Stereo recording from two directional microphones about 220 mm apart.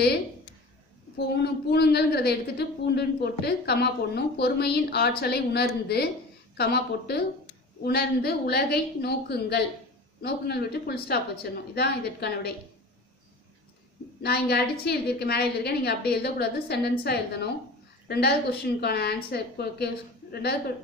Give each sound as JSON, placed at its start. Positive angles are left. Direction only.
{"t": 1.1, "sound": "a woman's voice", "side_deg": 50}
{"t": 14.2, "sound": "a woman's voice", "side_deg": 45}